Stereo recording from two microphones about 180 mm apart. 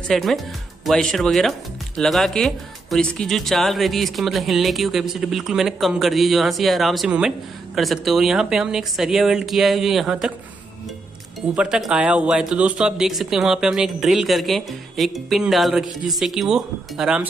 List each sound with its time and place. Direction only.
0.1 s speech: centre (ahead or behind)
11.5 s speech: 5° right (ahead or behind)